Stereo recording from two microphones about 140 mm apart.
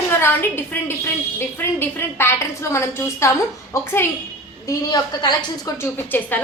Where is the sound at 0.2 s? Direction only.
15° left (ahead or behind).